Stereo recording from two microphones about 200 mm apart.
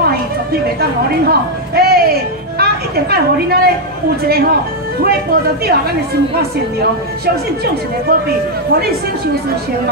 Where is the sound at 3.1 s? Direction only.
50° right (ahead or behind).